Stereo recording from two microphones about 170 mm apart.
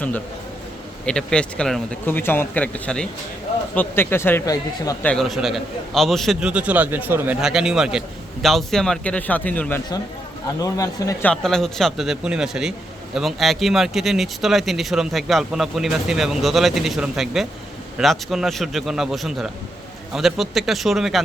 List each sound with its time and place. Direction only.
1.0 s a man's voice: 5° left (ahead or behind)
5.0 s a man's voice: centre (ahead or behind); by 11.3 s 20° left (ahead or behind)
11.3 s a man's voice: 5° left (ahead or behind)